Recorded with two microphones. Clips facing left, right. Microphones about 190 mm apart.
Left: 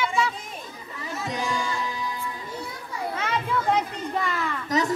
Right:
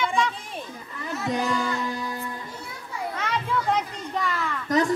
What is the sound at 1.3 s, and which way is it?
Music, 60° right (ahead or behind).